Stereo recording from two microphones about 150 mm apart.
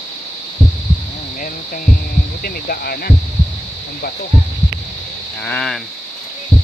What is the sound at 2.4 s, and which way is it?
Speech, 90° left.